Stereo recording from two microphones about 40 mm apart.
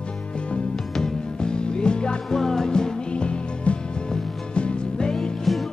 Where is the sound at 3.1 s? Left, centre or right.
Left.